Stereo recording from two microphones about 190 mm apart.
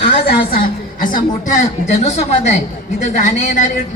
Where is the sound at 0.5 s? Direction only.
50° left (ahead or behind).